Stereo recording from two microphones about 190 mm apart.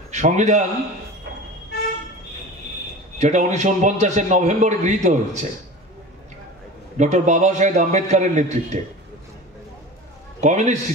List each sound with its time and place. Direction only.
0.1 s a man's voice: 40° right (ahead or behind)
3.2 s a man's voice: 40° right (ahead or behind)
7.0 s a man's voice: 40° right (ahead or behind)
10.4 s a man's voice: 40° right (ahead or behind)